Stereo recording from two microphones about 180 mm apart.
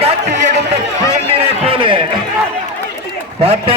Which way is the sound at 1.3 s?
30° right (ahead or behind).